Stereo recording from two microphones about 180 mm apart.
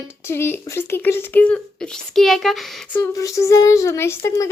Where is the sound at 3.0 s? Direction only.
15° left (ahead or behind).